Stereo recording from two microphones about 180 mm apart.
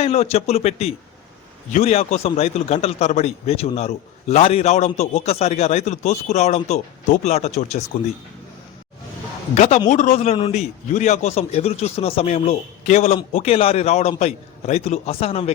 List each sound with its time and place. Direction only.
0.0 s a man's voice: 35° left (ahead or behind)
9.6 s a man's voice: 35° left (ahead or behind)